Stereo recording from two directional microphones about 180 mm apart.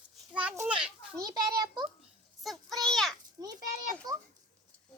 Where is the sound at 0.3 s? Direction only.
10° right (ahead or behind).